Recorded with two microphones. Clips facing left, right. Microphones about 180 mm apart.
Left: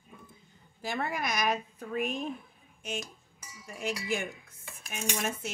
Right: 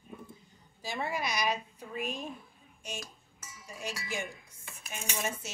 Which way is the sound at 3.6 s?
55° left (ahead or behind).